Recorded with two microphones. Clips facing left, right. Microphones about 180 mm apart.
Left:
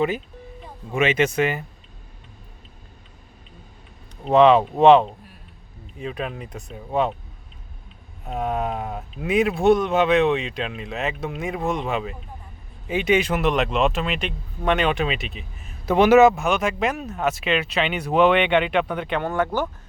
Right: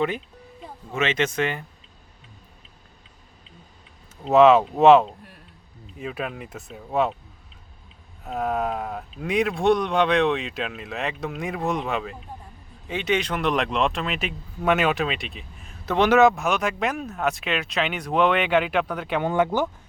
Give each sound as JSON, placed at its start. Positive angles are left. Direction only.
{"t": 0.9, "sound": "speech", "side_deg": 10}
{"t": 4.3, "sound": "speech", "side_deg": -5}
{"t": 8.2, "sound": "speech", "side_deg": 0}